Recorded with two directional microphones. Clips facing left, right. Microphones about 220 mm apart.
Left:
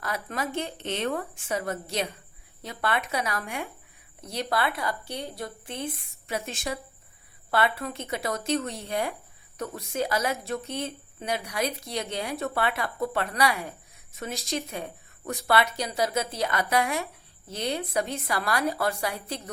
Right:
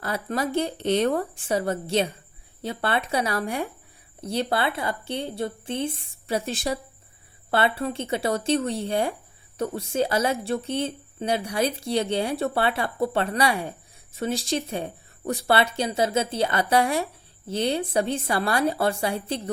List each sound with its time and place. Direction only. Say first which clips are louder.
0.0 s a woman's voice: right 5 dB; 30° right (ahead or behind)